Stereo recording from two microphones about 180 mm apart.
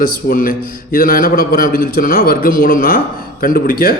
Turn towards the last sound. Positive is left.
turn(degrees=55)  # may be behind; listen again after turning